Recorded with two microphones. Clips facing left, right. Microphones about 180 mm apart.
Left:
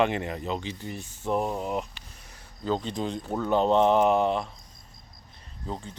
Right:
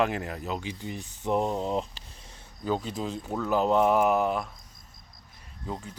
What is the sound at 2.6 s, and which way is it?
Speech, 10° right (ahead or behind).